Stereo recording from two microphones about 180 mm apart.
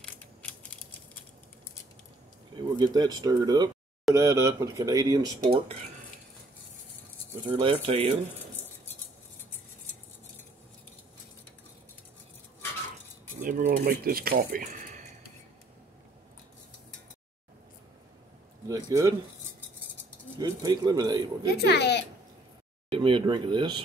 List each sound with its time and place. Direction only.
0.0 s scissors: 5° left (ahead or behind)
2.5 s speech: 25° right (ahead or behind)
5.5 s speech: 35° right (ahead or behind)
7.4 s speech: 25° right (ahead or behind)
13.4 s speech: 45° right (ahead or behind)
18.7 s speech: 20° right (ahead or behind)
20.3 s speech: 20° right (ahead or behind)
21.5 s speech: 70° left (ahead or behind)
22.8 s speech: 30° right (ahead or behind)